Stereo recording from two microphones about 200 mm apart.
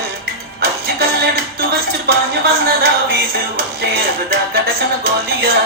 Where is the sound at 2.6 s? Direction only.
50° right (ahead or behind).